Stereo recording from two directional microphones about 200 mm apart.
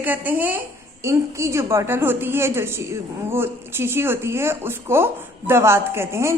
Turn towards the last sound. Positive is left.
turn(degrees=-15)  # may be behind; listen again after turning